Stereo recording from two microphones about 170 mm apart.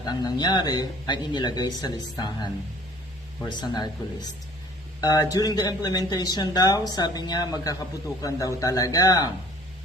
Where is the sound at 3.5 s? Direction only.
25° left (ahead or behind).